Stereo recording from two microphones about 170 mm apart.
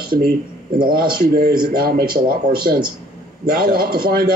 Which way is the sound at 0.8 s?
60° right (ahead or behind).